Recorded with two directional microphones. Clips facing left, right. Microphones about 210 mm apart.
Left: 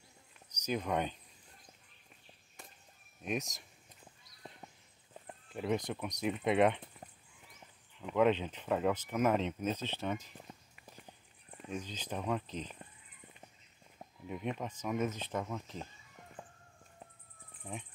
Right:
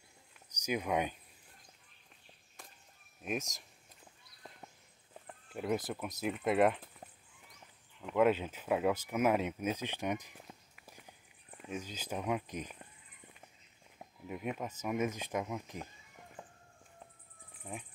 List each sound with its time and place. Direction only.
0.6 s speech: 10° right (ahead or behind)
3.2 s speech: centre (ahead or behind)
5.5 s speech: centre (ahead or behind)
10.3 s walk: 5° right (ahead or behind)
13.9 s speech: 5° right (ahead or behind)
17.6 s speech: centre (ahead or behind)